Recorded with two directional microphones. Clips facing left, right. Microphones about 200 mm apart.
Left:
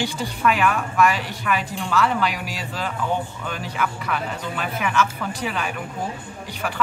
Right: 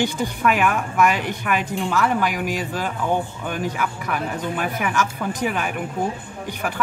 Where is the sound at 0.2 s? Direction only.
15° right (ahead or behind).